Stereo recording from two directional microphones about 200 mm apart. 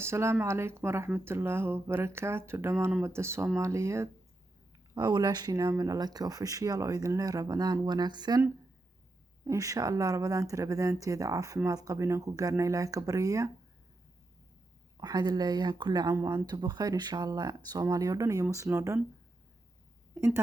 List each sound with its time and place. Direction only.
0.0 s speech: 15° right (ahead or behind)
14.9 s speech: 20° right (ahead or behind)
20.1 s speech: 15° right (ahead or behind)